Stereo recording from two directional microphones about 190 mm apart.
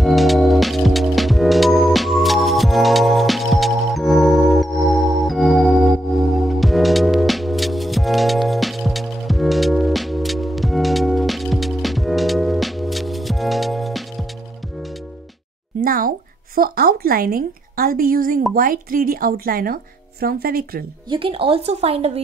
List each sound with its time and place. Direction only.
0.0 s music: centre (ahead or behind)
15.8 s a sound: 50° right (ahead or behind)
18.5 s a woman's voice: 50° right (ahead or behind)
21.1 s speech: 30° right (ahead or behind)